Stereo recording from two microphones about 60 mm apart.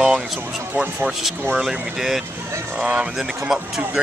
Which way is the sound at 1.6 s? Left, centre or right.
Centre.